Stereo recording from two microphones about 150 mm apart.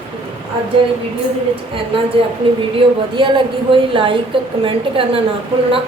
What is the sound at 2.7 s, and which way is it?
A woman's voice, 35° right (ahead or behind).